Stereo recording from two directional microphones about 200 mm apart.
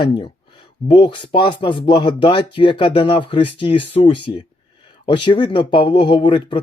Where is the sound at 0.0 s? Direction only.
25° left (ahead or behind).